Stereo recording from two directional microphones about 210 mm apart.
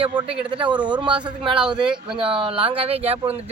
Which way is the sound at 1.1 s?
5° right (ahead or behind).